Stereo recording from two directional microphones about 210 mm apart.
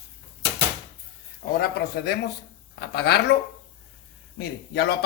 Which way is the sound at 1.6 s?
50° left (ahead or behind).